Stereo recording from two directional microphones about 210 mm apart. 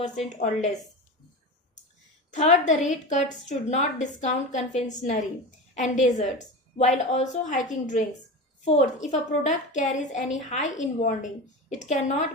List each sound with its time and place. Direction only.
0.3 s a woman's voice: 35° left (ahead or behind)
2.3 s a woman's voice: 35° left (ahead or behind)